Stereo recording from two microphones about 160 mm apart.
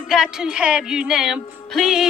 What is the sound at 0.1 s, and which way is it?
Music, 5° right (ahead or behind).